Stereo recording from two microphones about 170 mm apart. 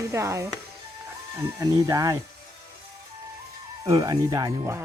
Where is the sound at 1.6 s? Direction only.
20° right (ahead or behind).